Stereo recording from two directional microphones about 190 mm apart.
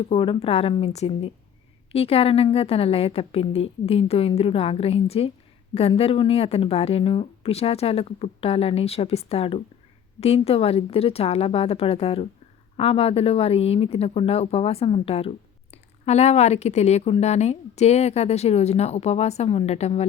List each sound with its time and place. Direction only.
0.1 s speech: 30° left (ahead or behind)